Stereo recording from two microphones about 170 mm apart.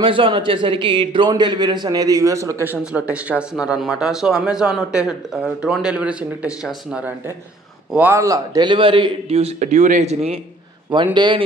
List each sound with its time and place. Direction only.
0.0 s a man's voice: 30° right (ahead or behind)
11.1 s speech: 25° right (ahead or behind)